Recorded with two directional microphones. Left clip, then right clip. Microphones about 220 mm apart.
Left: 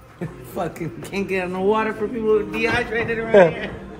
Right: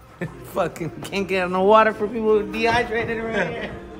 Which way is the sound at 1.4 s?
30° right (ahead or behind).